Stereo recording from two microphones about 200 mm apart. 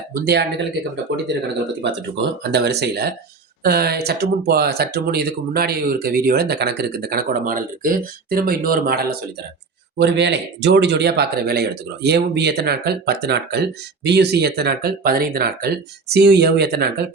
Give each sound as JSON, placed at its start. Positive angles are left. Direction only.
{"t": 0.3, "sound": "speech", "side_deg": -55}
{"t": 1.8, "sound": "speech", "side_deg": -60}